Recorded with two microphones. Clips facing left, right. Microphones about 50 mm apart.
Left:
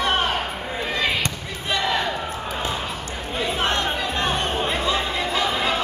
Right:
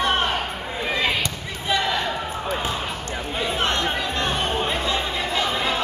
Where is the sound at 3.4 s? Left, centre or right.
Centre.